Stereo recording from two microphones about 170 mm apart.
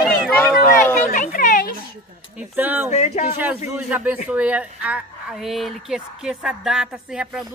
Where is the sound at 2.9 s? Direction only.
40° left (ahead or behind).